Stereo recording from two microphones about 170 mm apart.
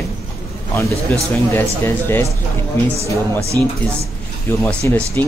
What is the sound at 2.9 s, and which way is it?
Speech, 35° right (ahead or behind).